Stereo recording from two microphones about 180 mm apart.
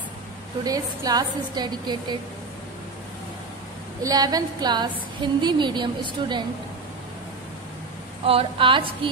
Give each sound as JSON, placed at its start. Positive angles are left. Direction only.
{"t": 0.7, "sound": "a woman's voice", "side_deg": -20}
{"t": 4.0, "sound": "a woman's voice", "side_deg": -20}
{"t": 8.3, "sound": "a woman's voice", "side_deg": -30}